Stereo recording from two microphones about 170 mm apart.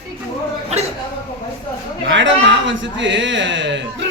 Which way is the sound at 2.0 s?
90° right.